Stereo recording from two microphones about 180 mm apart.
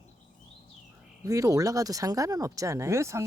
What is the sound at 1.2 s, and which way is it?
Speech, 20° right (ahead or behind).